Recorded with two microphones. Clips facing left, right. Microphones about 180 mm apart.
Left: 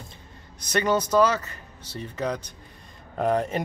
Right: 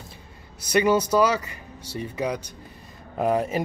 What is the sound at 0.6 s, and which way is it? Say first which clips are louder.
Speech: right 3 dB; 10° right (ahead or behind).